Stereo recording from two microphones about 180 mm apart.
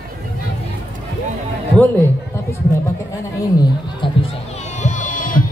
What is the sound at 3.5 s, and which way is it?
Music, 25° left (ahead or behind).